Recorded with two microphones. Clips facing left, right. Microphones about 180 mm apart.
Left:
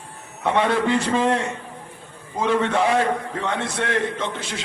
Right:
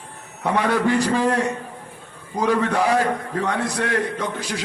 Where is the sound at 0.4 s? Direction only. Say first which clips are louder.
Even; 25° left (ahead or behind).